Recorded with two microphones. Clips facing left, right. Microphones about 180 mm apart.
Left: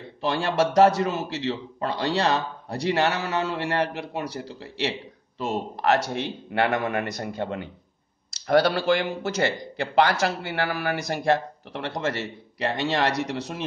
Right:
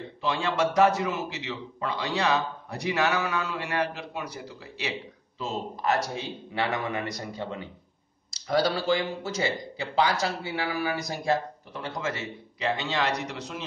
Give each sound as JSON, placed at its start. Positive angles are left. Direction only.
{"t": 0.2, "sound": "a man's voice", "side_deg": 65}